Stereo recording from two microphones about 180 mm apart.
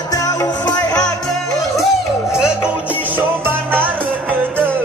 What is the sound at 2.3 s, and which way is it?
Music, 5° right (ahead or behind).